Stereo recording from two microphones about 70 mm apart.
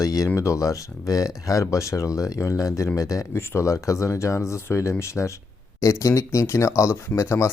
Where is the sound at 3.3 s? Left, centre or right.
Left.